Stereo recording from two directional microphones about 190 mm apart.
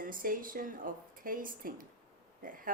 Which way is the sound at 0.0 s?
45° right (ahead or behind).